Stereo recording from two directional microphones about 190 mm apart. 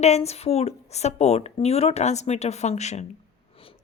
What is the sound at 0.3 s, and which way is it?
Speech, 35° left (ahead or behind).